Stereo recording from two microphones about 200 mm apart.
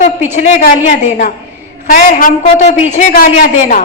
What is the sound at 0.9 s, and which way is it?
A woman's voice, 40° left (ahead or behind).